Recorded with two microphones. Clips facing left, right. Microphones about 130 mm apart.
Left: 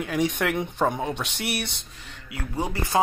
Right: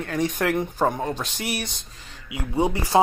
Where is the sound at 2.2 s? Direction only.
20° right (ahead or behind).